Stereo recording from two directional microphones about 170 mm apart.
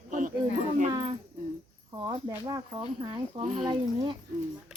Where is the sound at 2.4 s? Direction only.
25° right (ahead or behind).